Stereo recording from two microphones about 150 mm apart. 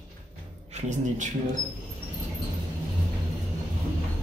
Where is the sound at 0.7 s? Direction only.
55° right (ahead or behind).